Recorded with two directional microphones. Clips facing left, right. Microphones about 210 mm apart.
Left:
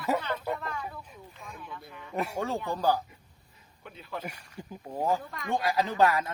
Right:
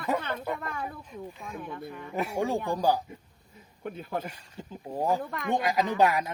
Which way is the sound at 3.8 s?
50° right (ahead or behind).